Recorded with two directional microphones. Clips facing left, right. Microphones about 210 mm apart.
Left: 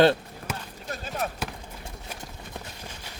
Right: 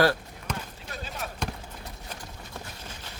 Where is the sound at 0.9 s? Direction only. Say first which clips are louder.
Left 6 dB; 50° left (ahead or behind).